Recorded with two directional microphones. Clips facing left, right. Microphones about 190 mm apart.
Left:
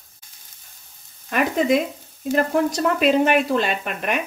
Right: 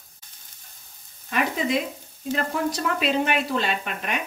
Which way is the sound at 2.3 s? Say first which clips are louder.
Left 7 dB; 50° left (ahead or behind).